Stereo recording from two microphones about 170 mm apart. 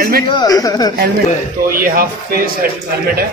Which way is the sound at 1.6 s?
60° right (ahead or behind).